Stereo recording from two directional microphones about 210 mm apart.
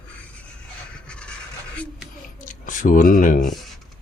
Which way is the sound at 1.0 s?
5° left (ahead or behind).